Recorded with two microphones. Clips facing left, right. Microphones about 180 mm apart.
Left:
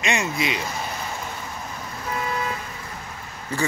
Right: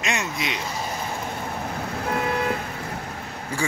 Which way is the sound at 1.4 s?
60° right (ahead or behind).